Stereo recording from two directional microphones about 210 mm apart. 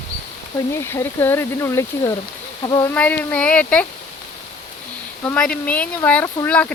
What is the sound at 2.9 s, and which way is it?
Speech, 10° left (ahead or behind).